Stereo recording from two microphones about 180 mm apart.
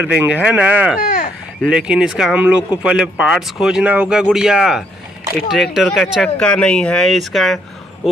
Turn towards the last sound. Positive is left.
turn(degrees=0)  # may be behind; listen again after turning